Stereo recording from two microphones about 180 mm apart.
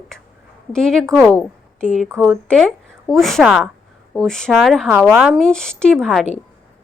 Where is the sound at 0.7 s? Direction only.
5° left (ahead or behind).